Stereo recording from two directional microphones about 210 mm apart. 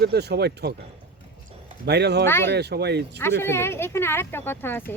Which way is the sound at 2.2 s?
10° left (ahead or behind).